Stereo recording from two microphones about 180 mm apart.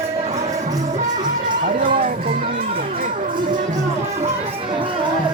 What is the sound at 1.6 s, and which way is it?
Run, 50° right (ahead or behind).